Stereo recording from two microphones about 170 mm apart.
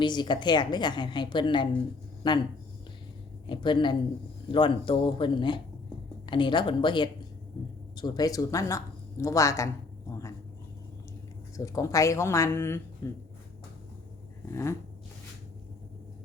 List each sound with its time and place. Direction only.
0.0 s a woman's voice: 25° left (ahead or behind)
3.5 s a woman's voice: 30° left (ahead or behind)
11.5 s speech: 20° left (ahead or behind)
14.5 s speech: 15° left (ahead or behind)